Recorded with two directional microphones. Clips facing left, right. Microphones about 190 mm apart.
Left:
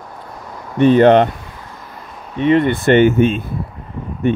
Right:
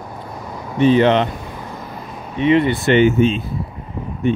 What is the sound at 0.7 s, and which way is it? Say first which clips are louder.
Speech: left 4 dB; 50° left (ahead or behind).